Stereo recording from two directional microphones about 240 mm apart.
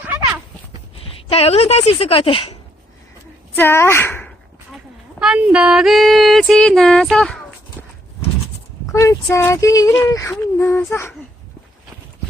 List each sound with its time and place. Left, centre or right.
0.0 s a sound: centre
0.9 s a woman's voice: left
3.5 s speech: centre
5.2 s female singing: centre
8.9 s a sound: centre
9.3 s female singing: centre